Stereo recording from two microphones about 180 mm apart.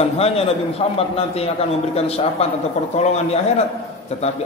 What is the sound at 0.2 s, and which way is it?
A man's voice, 35° left (ahead or behind).